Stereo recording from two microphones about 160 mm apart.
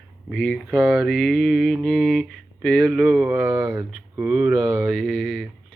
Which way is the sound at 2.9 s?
5° right (ahead or behind).